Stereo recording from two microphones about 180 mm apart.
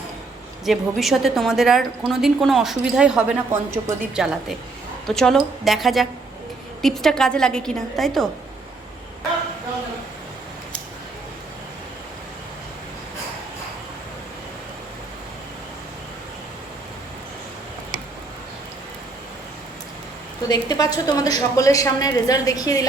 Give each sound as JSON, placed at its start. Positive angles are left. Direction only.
{"t": 0.6, "sound": "a woman's voice", "side_deg": 0}
{"t": 20.5, "sound": "a woman's voice", "side_deg": 20}